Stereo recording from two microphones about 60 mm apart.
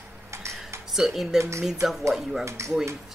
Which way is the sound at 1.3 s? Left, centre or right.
Right.